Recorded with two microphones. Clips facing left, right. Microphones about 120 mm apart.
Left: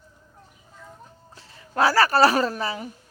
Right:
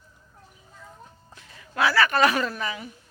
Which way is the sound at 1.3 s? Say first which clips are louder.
Left 5 dB; 30° left (ahead or behind).